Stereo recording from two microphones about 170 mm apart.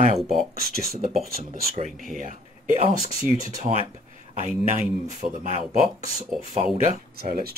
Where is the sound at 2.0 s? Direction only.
50° right (ahead or behind).